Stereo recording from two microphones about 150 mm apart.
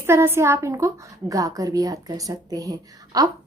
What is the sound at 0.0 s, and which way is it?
A woman's voice, 15° right (ahead or behind).